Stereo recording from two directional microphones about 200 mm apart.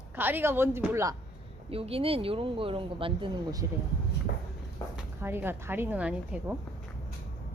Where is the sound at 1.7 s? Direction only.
30° right (ahead or behind).